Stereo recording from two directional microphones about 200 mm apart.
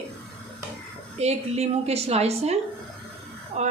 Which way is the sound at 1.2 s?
30° right (ahead or behind).